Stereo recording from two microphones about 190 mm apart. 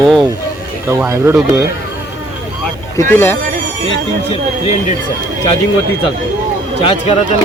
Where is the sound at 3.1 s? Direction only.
10° left (ahead or behind).